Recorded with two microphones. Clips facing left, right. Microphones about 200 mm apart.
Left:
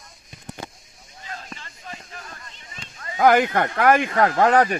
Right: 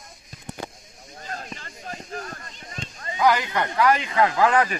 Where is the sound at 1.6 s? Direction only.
45° right (ahead or behind).